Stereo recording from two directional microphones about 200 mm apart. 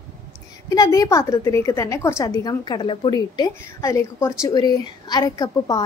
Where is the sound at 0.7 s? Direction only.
15° left (ahead or behind).